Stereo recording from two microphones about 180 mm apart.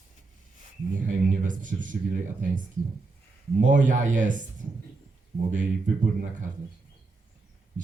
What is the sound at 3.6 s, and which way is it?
Speech, 45° right (ahead or behind).